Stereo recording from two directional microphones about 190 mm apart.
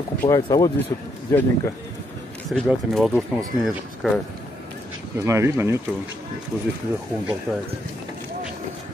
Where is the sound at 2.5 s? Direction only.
Centre (ahead or behind).